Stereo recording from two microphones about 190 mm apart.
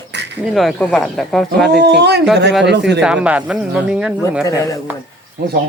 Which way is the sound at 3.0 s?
5° right (ahead or behind).